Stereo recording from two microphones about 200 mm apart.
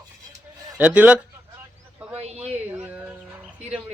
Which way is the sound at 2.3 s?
30° right (ahead or behind).